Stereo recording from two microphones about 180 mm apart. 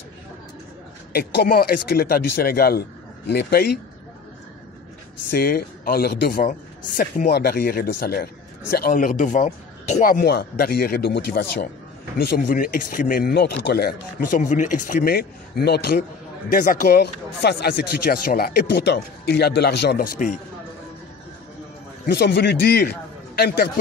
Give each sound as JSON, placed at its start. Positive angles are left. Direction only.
{"t": 1.1, "sound": "a man's voice", "side_deg": 60}
{"t": 5.3, "sound": "a man's voice", "side_deg": 55}
{"t": 12.4, "sound": "speech", "side_deg": 50}
{"t": 16.5, "sound": "a man's voice", "side_deg": 45}
{"t": 20.0, "sound": "speech", "side_deg": 45}
{"t": 22.0, "sound": "a man's voice", "side_deg": 65}